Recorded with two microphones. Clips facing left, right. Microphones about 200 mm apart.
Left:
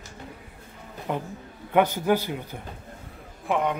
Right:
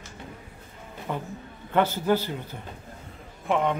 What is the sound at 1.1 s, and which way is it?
Speech, 15° left (ahead or behind).